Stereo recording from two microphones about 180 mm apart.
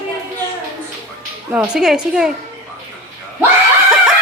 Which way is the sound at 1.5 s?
5° right (ahead or behind).